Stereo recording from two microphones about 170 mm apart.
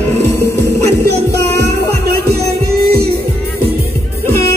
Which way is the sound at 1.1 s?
75° right (ahead or behind).